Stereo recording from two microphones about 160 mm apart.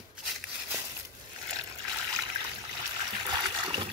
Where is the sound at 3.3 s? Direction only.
30° right (ahead or behind).